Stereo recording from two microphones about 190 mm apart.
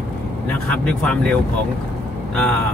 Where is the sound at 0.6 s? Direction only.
5° left (ahead or behind).